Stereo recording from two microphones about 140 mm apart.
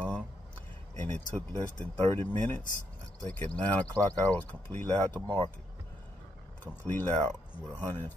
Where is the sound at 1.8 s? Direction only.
15° left (ahead or behind).